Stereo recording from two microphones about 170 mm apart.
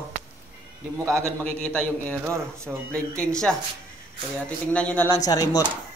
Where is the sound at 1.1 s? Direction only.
15° right (ahead or behind).